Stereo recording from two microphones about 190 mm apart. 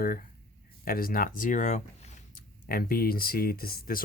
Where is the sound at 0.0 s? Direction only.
50° left (ahead or behind).